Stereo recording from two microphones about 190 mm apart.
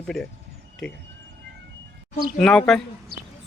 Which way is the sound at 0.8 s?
Centre (ahead or behind).